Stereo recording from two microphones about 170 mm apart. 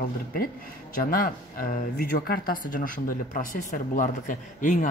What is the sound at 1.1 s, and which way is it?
Speech, 55° left (ahead or behind).